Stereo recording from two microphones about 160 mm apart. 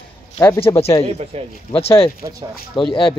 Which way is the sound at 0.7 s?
20° left (ahead or behind).